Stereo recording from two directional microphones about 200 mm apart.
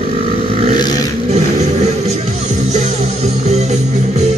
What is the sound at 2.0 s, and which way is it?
Music, 35° right (ahead or behind).